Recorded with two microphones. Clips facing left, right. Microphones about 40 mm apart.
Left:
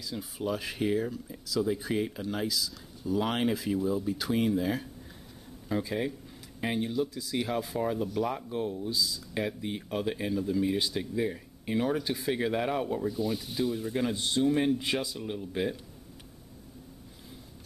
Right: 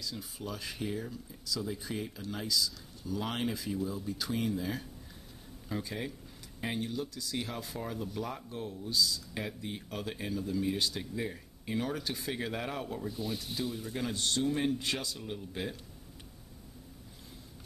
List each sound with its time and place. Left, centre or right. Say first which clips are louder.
0.4 s speech: left 8 dB; left
2.2 s speech: left 2 dB; centre
13.1 s speech: left 6 dB; centre